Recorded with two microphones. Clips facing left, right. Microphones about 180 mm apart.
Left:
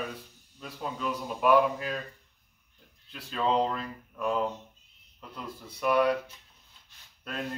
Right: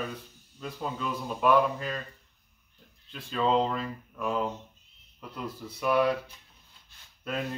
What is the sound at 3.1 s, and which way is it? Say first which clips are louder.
Speech: right 2 dB; centre (ahead or behind).